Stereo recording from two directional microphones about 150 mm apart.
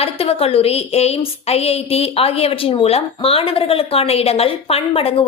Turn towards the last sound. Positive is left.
turn(degrees=40)  # may be behind; listen again after turning